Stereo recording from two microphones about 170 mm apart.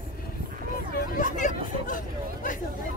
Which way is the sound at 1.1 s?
50° left (ahead or behind).